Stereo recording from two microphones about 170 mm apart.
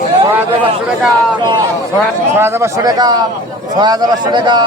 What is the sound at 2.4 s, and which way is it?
A man's voice, 15° right (ahead or behind).